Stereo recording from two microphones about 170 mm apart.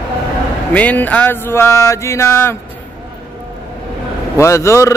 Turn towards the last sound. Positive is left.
turn(degrees=15)  # may be behind; listen again after turning